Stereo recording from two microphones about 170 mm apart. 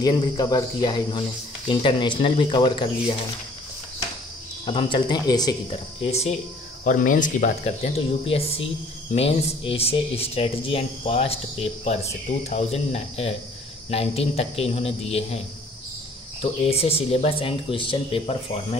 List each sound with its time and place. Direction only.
0.0 s speech: 25° left (ahead or behind)
4.6 s speech: 30° left (ahead or behind)
6.0 s speech: 40° left (ahead or behind)
6.8 s speech: 50° left (ahead or behind); by 18.8 s 30° left (ahead or behind)